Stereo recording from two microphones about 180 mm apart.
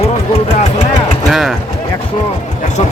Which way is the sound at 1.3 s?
Centre (ahead or behind).